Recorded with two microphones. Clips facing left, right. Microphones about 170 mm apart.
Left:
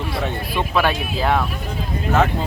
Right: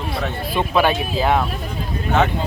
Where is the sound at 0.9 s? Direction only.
5° right (ahead or behind).